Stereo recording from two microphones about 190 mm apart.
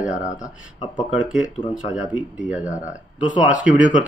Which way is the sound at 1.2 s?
5° right (ahead or behind).